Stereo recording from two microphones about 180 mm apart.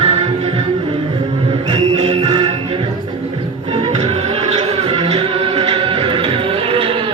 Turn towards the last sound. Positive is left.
turn(degrees=-30)  # may be behind; listen again after turning